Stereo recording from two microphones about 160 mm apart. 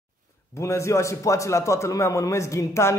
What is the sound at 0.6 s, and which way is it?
A man's voice, 20° left (ahead or behind).